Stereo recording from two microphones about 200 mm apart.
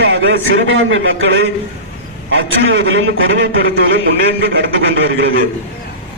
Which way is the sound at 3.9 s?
55° right (ahead or behind).